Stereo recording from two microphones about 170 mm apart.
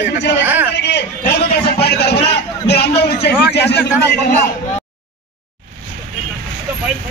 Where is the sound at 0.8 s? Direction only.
80° left.